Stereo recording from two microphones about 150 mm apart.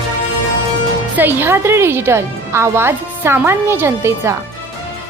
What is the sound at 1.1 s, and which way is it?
A woman's voice, 15° right (ahead or behind).